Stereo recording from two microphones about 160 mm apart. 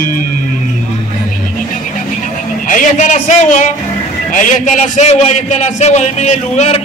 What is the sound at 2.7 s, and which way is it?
A man's voice, 50° left (ahead or behind).